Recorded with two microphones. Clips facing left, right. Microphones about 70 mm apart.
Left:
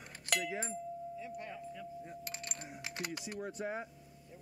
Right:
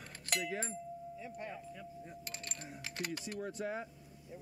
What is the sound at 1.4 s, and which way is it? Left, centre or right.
Speech, centre.